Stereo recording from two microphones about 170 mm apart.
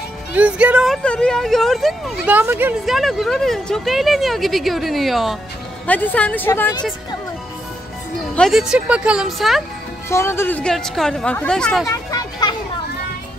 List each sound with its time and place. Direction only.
0.4 s speech: 10° right (ahead or behind)
2.3 s speech: 10° right (ahead or behind)
2.8 s speech: centre (ahead or behind)
8.4 s speech: centre (ahead or behind)
10.0 s speech: 15° left (ahead or behind)
11.8 s a sound: 20° left (ahead or behind)